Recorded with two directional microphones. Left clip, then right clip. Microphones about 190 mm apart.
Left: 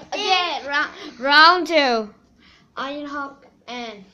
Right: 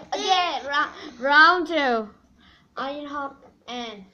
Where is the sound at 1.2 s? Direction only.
40° left (ahead or behind).